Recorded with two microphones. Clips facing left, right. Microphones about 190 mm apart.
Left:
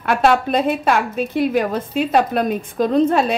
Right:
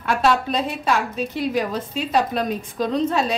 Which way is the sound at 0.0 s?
55° left (ahead or behind).